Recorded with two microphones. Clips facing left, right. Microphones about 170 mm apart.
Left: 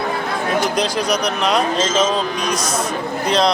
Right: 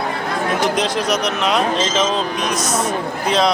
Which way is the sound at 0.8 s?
Centre (ahead or behind).